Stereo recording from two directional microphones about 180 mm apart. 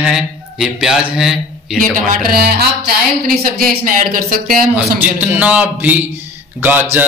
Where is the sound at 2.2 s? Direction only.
60° right (ahead or behind).